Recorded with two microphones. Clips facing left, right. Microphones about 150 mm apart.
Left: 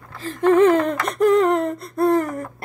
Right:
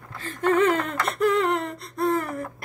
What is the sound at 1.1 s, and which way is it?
Speech, 45° left (ahead or behind).